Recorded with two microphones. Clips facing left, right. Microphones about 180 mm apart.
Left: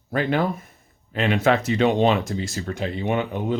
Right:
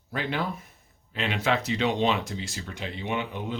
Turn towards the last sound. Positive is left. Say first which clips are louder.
# left 7 dB
turn(degrees=50)  # may be behind; listen again after turning